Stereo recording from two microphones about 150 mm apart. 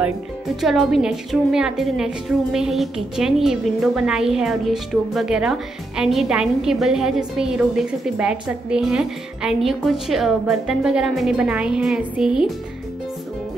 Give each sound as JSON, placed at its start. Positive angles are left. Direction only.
{"t": 0.6, "sound": "a woman's voice", "side_deg": 0}